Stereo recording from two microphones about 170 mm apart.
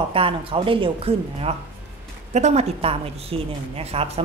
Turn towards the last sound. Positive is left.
turn(degrees=-35)  # may be behind; listen again after turning